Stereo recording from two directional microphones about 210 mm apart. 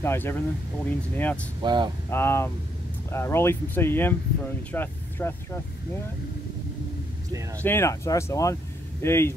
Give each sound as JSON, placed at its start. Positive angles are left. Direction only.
{"t": 0.0, "sound": "speech", "side_deg": 10}
{"t": 1.6, "sound": "speech", "side_deg": -20}
{"t": 2.0, "sound": "speech", "side_deg": 10}
{"t": 7.6, "sound": "speech", "side_deg": 10}